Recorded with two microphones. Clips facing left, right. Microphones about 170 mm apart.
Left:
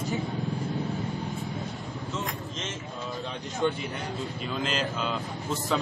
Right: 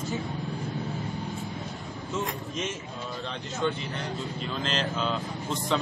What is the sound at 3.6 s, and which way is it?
A man's voice, 10° left (ahead or behind).